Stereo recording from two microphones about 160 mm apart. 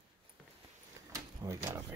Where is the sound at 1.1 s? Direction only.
20° right (ahead or behind).